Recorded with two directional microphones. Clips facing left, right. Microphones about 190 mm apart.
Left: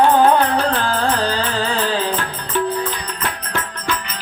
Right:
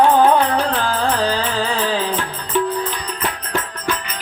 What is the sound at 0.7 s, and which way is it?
Music, centre (ahead or behind).